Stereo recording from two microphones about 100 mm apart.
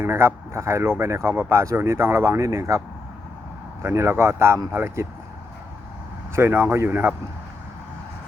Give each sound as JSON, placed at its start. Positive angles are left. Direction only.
{"t": 0.0, "sound": "speech", "side_deg": -25}
{"t": 3.8, "sound": "speech", "side_deg": -25}
{"t": 6.3, "sound": "speech", "side_deg": -25}